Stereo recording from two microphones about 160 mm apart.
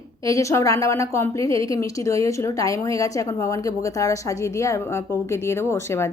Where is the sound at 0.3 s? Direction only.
20° left (ahead or behind).